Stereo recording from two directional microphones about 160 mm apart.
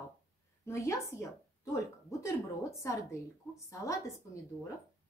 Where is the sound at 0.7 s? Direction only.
20° left (ahead or behind).